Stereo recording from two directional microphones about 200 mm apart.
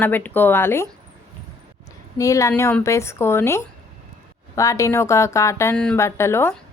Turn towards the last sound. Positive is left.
turn(degrees=15)  # may be behind; listen again after turning